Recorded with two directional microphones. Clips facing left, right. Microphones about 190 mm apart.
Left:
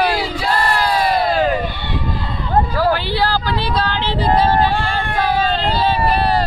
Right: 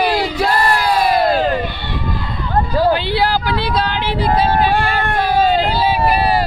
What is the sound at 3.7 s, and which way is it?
Female singing, 15° right (ahead or behind).